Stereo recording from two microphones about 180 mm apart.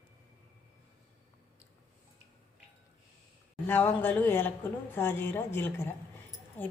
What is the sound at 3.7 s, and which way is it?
A woman's voice, 10° left (ahead or behind).